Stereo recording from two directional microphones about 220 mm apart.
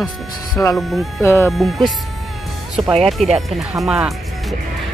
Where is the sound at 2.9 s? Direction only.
Centre (ahead or behind).